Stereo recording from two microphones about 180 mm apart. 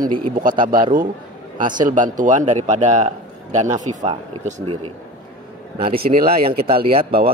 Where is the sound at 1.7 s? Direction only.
45° right (ahead or behind).